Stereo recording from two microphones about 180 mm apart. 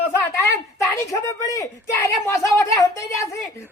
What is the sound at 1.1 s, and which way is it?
A woman's voice, 20° left (ahead or behind).